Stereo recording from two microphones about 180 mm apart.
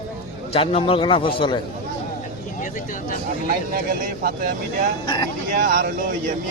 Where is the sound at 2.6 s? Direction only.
50° left (ahead or behind).